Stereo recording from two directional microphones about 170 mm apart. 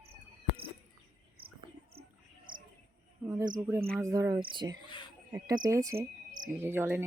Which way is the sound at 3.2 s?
20° right (ahead or behind).